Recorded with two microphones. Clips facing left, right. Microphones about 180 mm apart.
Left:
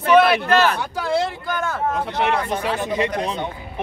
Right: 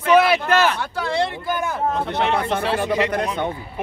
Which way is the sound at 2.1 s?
10° left (ahead or behind).